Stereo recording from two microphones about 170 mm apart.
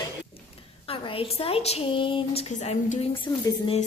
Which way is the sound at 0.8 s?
30° left (ahead or behind).